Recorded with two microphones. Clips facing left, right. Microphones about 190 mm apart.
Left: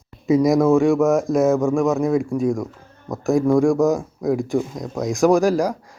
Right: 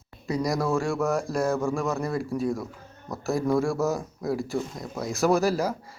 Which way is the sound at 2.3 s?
10° left (ahead or behind).